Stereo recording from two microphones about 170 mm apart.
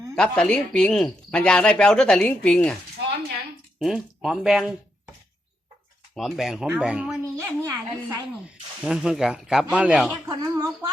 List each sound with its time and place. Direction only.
0.2 s speech: 5° left (ahead or behind)
3.8 s speech: centre (ahead or behind)
6.1 s speech: centre (ahead or behind)
7.3 s a sound: 15° right (ahead or behind)
8.8 s speech: 5° right (ahead or behind)
10.1 s a sound: 20° right (ahead or behind)